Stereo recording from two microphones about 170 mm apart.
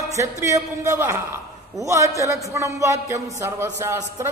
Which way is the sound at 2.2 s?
20° right (ahead or behind).